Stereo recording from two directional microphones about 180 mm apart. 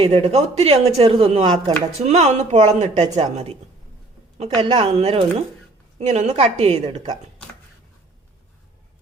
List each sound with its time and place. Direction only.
0.0 s speech: 35° right (ahead or behind)